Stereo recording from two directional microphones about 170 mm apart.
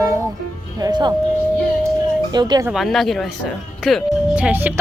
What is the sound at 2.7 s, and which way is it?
Speech, centre (ahead or behind).